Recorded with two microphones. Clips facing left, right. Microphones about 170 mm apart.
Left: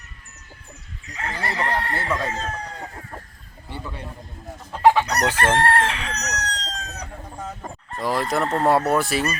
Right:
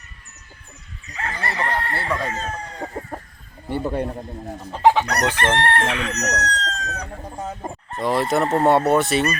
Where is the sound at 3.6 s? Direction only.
50° right (ahead or behind).